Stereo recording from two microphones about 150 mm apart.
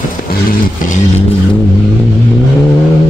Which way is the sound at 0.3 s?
65° left (ahead or behind).